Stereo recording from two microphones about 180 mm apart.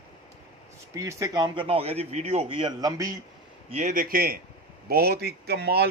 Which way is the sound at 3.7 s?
45° right (ahead or behind).